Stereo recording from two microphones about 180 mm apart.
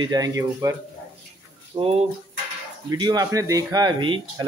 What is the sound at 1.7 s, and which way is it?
Speech, 30° right (ahead or behind).